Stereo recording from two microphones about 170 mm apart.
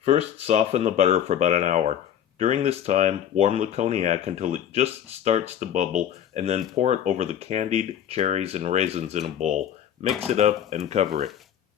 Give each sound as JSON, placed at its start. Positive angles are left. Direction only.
{"t": 0.0, "sound": "speech", "side_deg": -40}